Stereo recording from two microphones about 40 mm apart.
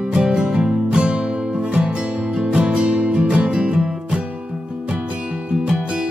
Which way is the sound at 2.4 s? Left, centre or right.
Right.